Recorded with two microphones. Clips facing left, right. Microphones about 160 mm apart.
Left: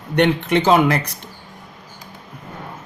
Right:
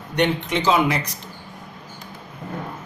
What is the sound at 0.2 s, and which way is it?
Speech, 60° left (ahead or behind).